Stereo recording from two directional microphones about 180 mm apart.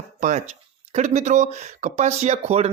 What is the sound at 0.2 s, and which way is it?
Speech, 45° right (ahead or behind).